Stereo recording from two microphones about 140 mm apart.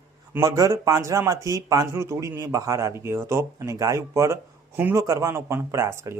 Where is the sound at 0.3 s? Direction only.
25° right (ahead or behind).